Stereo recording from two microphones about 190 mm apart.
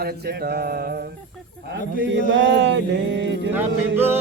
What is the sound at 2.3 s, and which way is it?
Mantra, 70° right (ahead or behind).